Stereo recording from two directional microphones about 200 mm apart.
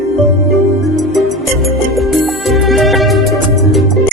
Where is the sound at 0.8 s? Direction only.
Centre (ahead or behind).